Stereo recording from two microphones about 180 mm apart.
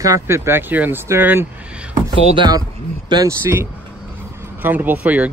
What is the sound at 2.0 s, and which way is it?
Speech, 20° right (ahead or behind).